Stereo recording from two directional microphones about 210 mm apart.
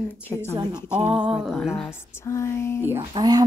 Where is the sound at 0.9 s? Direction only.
5° right (ahead or behind).